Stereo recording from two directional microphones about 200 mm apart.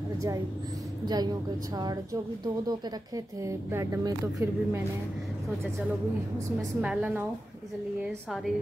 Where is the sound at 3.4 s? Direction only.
15° right (ahead or behind).